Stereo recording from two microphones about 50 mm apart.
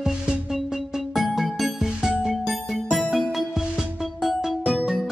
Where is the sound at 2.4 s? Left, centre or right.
Centre.